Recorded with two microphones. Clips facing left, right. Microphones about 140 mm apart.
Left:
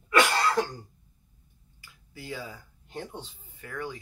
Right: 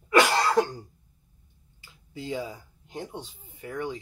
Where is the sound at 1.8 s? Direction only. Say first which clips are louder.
Right 6 dB; 25° right (ahead or behind).